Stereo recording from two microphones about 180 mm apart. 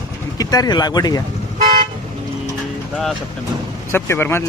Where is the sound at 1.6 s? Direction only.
50° right (ahead or behind).